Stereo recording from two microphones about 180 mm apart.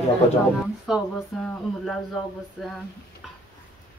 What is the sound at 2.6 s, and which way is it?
Speech, 5° left (ahead or behind).